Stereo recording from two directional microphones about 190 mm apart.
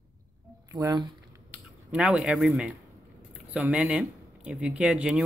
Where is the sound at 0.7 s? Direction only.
20° right (ahead or behind).